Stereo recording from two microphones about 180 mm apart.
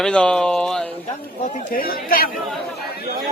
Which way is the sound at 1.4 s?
50° left (ahead or behind).